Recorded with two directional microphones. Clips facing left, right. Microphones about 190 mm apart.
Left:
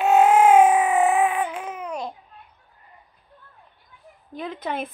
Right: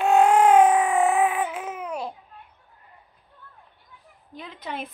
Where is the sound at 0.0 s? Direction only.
5° left (ahead or behind).